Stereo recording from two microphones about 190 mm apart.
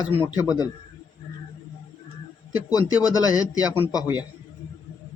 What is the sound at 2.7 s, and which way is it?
A man's voice, 20° left (ahead or behind).